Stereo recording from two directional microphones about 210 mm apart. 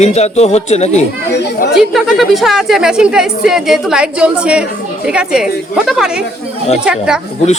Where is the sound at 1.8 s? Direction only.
Centre (ahead or behind).